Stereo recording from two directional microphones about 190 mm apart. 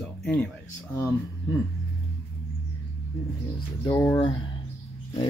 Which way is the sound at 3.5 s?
15° left (ahead or behind).